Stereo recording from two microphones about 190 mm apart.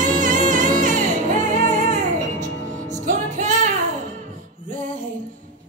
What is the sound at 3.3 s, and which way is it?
Music, 40° right (ahead or behind).